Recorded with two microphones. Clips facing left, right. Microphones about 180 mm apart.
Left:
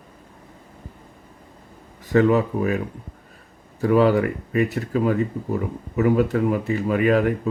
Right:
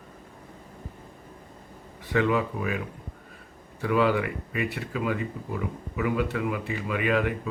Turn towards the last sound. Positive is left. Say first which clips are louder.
# left 7 dB
turn(degrees=40)  # may be behind; listen again after turning